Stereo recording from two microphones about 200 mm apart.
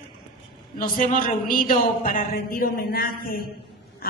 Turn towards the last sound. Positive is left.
turn(degrees=50)  # may be behind; listen again after turning